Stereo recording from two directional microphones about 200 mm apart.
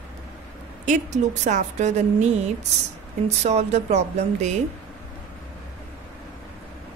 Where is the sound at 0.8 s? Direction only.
35° right (ahead or behind).